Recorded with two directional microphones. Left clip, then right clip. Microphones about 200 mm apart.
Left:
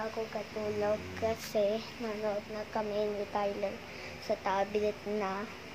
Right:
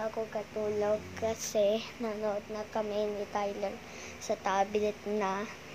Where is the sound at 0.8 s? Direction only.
10° right (ahead or behind).